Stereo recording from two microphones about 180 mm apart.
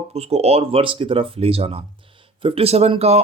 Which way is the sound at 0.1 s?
35° right (ahead or behind).